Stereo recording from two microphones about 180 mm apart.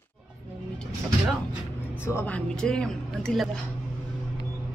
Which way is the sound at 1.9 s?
10° left (ahead or behind).